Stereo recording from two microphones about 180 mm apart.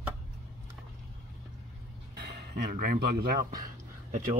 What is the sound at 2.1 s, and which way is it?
Speech, 60° right (ahead or behind).